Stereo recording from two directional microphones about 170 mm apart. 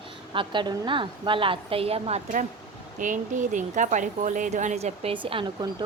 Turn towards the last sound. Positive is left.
turn(degrees=-30)  # may be behind; listen again after turning